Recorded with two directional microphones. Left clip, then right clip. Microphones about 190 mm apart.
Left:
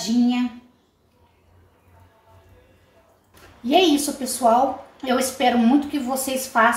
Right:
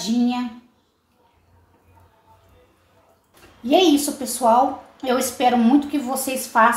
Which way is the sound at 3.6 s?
35° right (ahead or behind).